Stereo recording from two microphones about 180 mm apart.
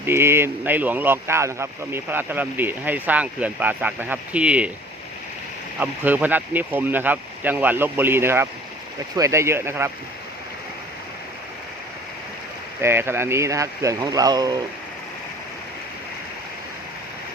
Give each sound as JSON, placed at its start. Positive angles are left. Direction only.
{"t": 0.0, "sound": "speech", "side_deg": -15}
{"t": 5.8, "sound": "speech", "side_deg": -10}
{"t": 12.8, "sound": "speech", "side_deg": -15}